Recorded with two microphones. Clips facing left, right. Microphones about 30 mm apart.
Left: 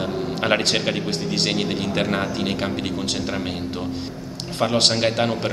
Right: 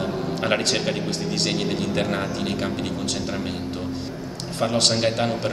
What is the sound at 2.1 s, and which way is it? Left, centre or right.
Speech, left.